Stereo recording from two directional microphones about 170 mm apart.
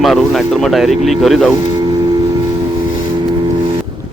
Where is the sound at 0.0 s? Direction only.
Centre (ahead or behind).